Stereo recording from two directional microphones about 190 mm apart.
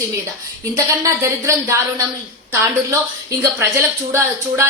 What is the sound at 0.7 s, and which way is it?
A woman's voice, 15° right (ahead or behind).